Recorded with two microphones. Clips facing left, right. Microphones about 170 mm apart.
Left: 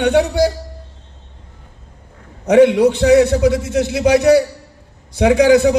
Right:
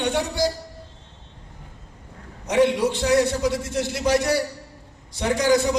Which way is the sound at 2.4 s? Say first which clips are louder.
Left 9 dB; 60° left (ahead or behind).